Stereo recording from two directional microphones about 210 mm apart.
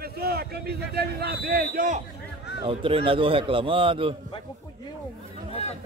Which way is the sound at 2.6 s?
25° right (ahead or behind).